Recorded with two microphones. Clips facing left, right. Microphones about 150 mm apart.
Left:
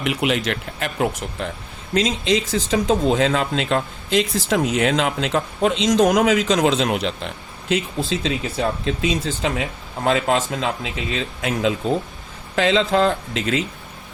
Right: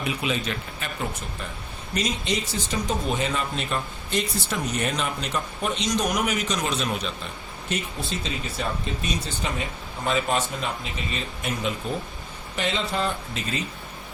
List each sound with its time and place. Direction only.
0.0 s speech: 80° left